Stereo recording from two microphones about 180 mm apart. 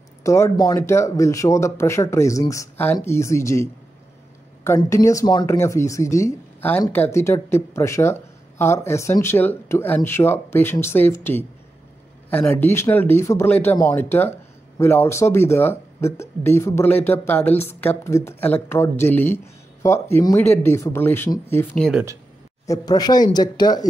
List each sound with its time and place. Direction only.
0.2 s speech: 15° left (ahead or behind)
22.7 s speech: 20° left (ahead or behind)